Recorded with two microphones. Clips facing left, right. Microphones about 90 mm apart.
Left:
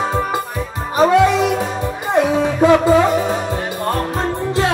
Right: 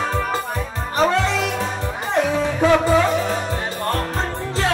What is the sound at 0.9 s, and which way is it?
Music, 15° left (ahead or behind).